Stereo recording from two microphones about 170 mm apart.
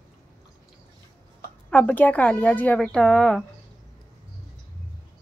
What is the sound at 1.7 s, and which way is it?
A woman's voice, 10° left (ahead or behind).